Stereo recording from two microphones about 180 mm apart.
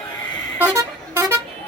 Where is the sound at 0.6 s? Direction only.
15° right (ahead or behind).